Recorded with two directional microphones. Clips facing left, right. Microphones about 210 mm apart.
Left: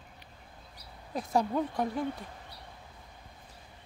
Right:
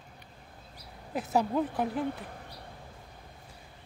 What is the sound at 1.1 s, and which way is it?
A woman's voice, 5° right (ahead or behind).